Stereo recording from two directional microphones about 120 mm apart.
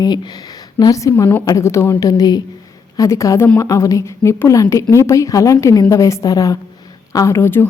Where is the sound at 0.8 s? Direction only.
30° left (ahead or behind).